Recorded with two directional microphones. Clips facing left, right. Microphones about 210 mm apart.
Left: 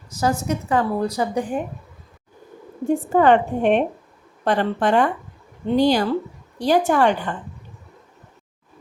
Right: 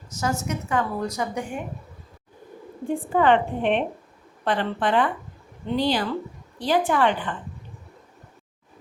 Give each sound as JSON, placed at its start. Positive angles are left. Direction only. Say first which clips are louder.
{"t": 0.1, "sound": "a woman's voice", "louder": "left 5 dB", "side_deg": 35}
{"t": 3.1, "sound": "a woman's voice", "louder": "left 3 dB", "side_deg": 45}